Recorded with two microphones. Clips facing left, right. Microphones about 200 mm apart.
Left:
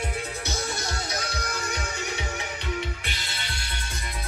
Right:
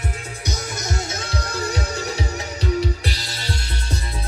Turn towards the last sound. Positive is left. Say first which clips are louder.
# right 7 dB
turn(degrees=-40)  # may be behind; listen again after turning